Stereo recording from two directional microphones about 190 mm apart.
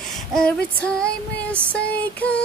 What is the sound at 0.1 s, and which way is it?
Female singing, 5° left (ahead or behind).